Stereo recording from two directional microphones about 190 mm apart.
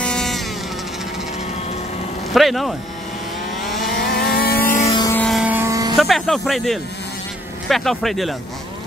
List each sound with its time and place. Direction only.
0.0 s vehicle: 5° left (ahead or behind)
2.3 s speech: centre (ahead or behind)
3.7 s vehicle: centre (ahead or behind)
4.2 s vehicle: 55° left (ahead or behind)
4.8 s vehicle: 25° left (ahead or behind)
5.1 s vehicle: 5° left (ahead or behind)
5.4 s vehicle: 10° right (ahead or behind)
5.9 s speech: centre (ahead or behind)